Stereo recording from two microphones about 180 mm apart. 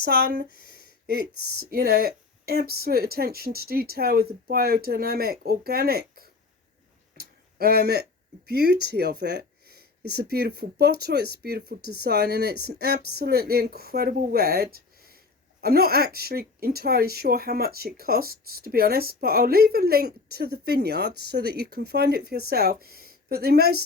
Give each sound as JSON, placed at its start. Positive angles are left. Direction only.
{"t": 0.0, "sound": "a woman's voice", "side_deg": -60}
{"t": 7.2, "sound": "a sound", "side_deg": -60}
{"t": 8.4, "sound": "a woman's voice", "side_deg": -65}